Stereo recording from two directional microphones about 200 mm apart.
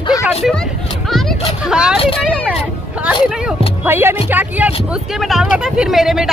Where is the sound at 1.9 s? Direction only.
30° left (ahead or behind).